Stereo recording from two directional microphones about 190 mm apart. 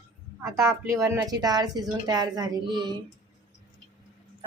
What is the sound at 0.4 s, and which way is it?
Speech, 15° right (ahead or behind).